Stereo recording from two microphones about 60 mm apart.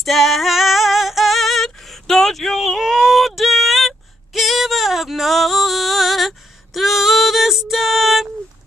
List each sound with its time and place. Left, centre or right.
0.0 s female singing: centre